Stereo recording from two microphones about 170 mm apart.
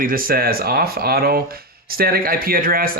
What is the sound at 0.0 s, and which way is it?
Speech, 60° right (ahead or behind).